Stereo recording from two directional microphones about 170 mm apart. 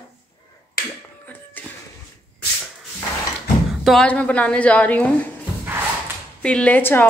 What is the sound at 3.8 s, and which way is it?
Speech, 5° left (ahead or behind).